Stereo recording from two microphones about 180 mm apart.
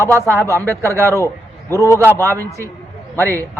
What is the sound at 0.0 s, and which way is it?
Speech, 15° right (ahead or behind).